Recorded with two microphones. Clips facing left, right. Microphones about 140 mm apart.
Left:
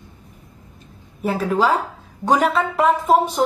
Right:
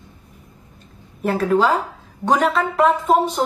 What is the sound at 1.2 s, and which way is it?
A woman's voice, 5° left (ahead or behind).